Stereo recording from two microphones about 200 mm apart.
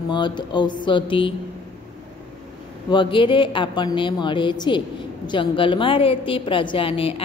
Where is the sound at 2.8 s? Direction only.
25° left (ahead or behind).